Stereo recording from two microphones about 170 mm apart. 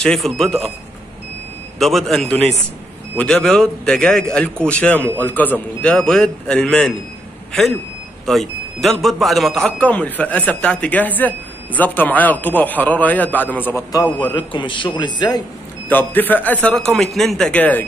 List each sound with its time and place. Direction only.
0.0 s a man's voice: 5° left (ahead or behind)
1.8 s a man's voice: centre (ahead or behind)
8.3 s a man's voice: centre (ahead or behind)
14.1 s a man's voice: 30° left (ahead or behind)
15.9 s a man's voice: 10° left (ahead or behind)